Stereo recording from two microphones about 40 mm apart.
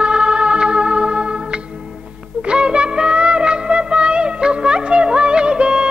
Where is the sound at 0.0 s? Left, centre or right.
Right.